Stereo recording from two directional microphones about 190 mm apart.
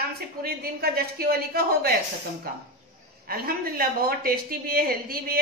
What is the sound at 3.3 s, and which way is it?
A woman's voice, 50° right (ahead or behind).